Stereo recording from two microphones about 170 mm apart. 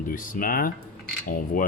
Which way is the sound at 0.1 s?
55° left (ahead or behind).